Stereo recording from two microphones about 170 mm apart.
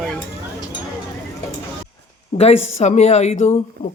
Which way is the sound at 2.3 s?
40° left (ahead or behind).